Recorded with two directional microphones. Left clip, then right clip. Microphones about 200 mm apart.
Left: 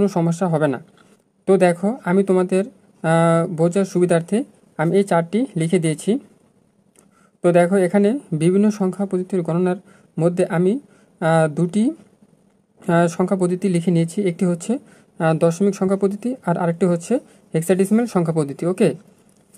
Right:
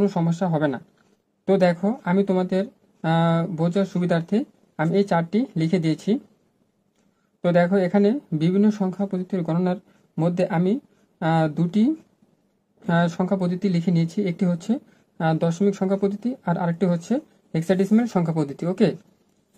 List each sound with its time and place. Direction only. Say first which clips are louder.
0.0 s speech: left 4 dB; 40° left (ahead or behind)
7.4 s speech: left 4 dB; 35° left (ahead or behind)